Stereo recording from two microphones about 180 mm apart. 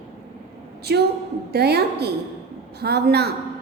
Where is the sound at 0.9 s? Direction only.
65° right (ahead or behind).